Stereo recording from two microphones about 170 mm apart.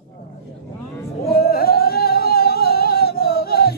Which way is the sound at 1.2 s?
65° left (ahead or behind).